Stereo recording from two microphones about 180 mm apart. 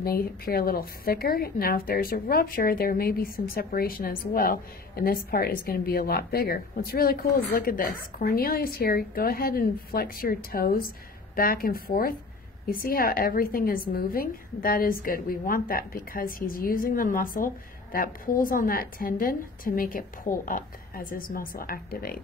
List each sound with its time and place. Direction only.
0.0 s a woman's voice: 55° left (ahead or behind)